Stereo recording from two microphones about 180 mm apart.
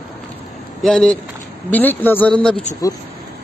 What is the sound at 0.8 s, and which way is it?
Speech, 5° left (ahead or behind).